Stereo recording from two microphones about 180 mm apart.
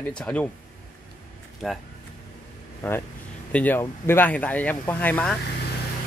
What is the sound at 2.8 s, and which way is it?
Speech, 10° left (ahead or behind).